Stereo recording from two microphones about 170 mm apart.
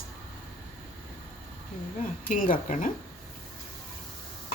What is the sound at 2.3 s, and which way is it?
Dishes, 50° left (ahead or behind).